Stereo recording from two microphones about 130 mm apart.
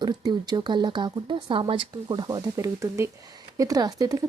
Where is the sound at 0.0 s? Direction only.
35° right (ahead or behind).